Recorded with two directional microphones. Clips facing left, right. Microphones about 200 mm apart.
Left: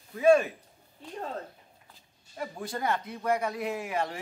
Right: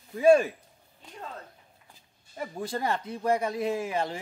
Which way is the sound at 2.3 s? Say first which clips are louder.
Right 2 dB; 25° right (ahead or behind).